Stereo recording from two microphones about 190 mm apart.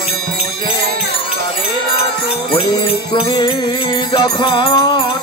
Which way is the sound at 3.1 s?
25° left (ahead or behind).